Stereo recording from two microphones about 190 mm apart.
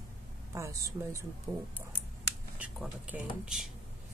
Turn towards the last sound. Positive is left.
turn(degrees=-5)  # may be behind; listen again after turning